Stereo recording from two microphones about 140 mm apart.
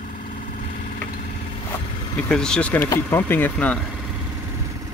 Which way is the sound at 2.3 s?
5° left (ahead or behind).